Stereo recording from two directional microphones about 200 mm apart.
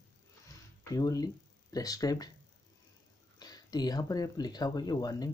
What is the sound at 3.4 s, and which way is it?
Speech, 20° left (ahead or behind).